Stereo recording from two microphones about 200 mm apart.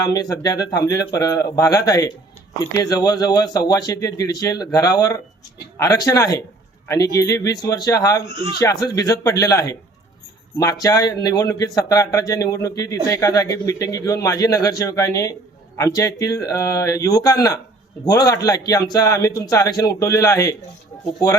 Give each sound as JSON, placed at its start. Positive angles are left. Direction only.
{"t": 0.0, "sound": "speech", "side_deg": 20}